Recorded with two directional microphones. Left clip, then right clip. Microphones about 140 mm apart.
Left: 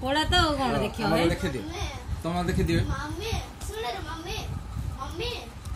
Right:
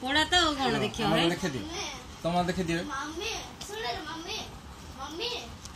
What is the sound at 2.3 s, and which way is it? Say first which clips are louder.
Speech: left 2 dB; 50° right (ahead or behind).